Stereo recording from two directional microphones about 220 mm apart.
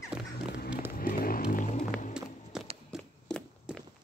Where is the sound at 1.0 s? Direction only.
40° left (ahead or behind).